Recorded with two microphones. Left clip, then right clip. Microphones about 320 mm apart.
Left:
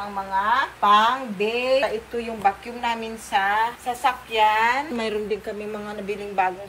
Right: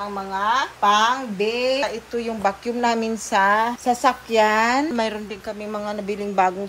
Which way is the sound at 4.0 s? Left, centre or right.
Right.